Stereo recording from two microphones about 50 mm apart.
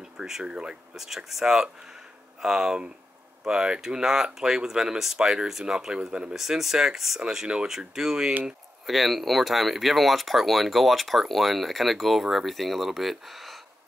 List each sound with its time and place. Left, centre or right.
0.2 s speech: centre
0.9 s speech: centre
6.3 s speech: centre